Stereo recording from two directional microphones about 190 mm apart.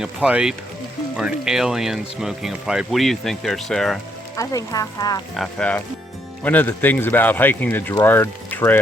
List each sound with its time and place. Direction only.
0.0 s speech: 5° right (ahead or behind)
4.4 s speech: 15° left (ahead or behind)
5.4 s speech: 5° left (ahead or behind)